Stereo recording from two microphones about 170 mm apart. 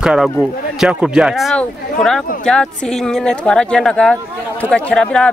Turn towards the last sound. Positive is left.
turn(degrees=5)  # may be behind; listen again after turning